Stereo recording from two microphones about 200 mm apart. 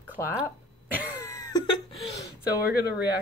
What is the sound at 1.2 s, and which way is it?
Laughter, 15° left (ahead or behind).